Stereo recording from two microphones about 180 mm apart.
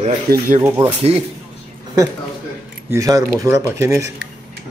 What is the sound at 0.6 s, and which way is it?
Speech, 15° right (ahead or behind).